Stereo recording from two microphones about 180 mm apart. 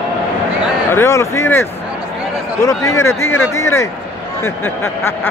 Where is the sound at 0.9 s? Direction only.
15° left (ahead or behind).